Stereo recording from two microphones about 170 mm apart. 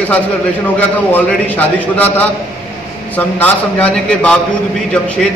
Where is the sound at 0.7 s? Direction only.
10° left (ahead or behind).